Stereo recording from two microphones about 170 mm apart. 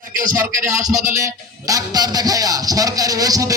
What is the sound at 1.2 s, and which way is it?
A man's voice, 20° right (ahead or behind).